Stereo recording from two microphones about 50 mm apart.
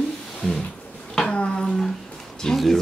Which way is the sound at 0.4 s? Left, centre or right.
Centre.